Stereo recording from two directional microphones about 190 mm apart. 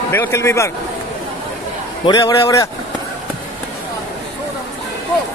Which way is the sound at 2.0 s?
20° left (ahead or behind).